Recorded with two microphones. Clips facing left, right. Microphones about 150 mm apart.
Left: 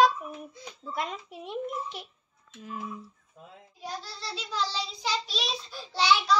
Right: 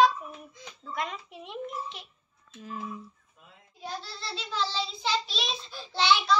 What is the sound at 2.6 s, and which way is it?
Child singing, 15° left (ahead or behind).